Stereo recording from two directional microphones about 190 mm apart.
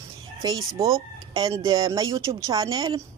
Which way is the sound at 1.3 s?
20° right (ahead or behind).